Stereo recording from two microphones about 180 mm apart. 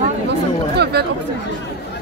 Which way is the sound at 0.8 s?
65° right (ahead or behind).